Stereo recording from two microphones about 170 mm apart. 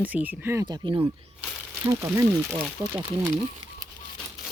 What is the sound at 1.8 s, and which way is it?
Speech, 15° right (ahead or behind).